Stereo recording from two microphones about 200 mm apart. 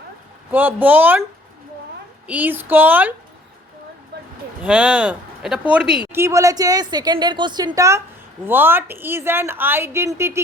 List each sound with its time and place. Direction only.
0.5 s speech: 10° right (ahead or behind)
2.2 s speech: 10° right (ahead or behind)
4.1 s a sound: 55° right (ahead or behind)
4.6 s speech: 5° right (ahead or behind)